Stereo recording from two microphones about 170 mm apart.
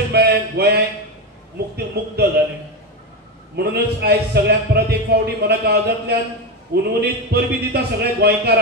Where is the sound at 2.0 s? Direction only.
70° right (ahead or behind).